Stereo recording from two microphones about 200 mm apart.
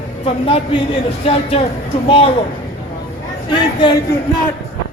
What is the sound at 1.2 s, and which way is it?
Speech, 30° left (ahead or behind).